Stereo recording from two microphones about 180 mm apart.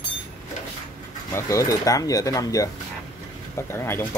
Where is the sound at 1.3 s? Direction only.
15° left (ahead or behind).